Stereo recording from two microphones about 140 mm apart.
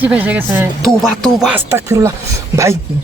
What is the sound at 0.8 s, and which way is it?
Speech, centre (ahead or behind).